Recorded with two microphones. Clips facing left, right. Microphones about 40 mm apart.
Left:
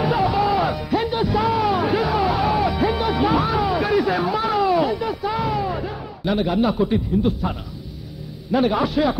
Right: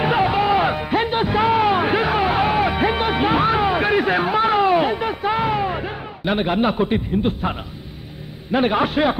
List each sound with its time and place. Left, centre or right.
0.0 s music: right
8.5 s a man's voice: right